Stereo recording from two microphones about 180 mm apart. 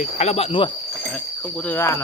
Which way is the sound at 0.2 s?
35° left (ahead or behind).